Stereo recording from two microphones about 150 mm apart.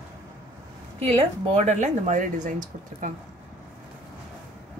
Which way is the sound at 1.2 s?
45° right (ahead or behind).